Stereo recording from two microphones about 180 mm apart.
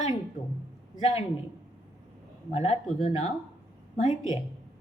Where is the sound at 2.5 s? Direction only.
40° left (ahead or behind).